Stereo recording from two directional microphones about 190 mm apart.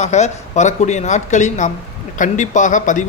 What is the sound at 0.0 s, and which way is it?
A man's voice, 35° left (ahead or behind).